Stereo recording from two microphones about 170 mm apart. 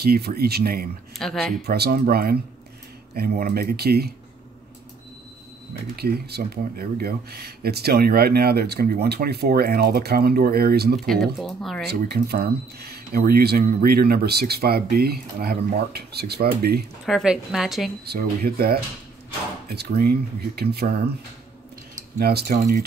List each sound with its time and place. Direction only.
0.0 s speech: 65° right (ahead or behind)
1.1 s speech: centre (ahead or behind)
1.7 s speech: 65° right (ahead or behind)
5.9 s speech: 70° right (ahead or behind)
11.1 s speech: centre (ahead or behind)
11.9 s speech: 70° right (ahead or behind)
17.0 s speech: centre (ahead or behind)
18.0 s speech: 65° right (ahead or behind)
22.2 s speech: 70° right (ahead or behind)